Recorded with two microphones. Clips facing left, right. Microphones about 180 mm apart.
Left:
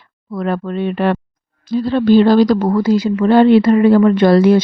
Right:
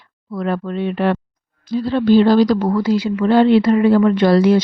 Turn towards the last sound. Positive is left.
turn(degrees=55)  # may be behind; listen again after turning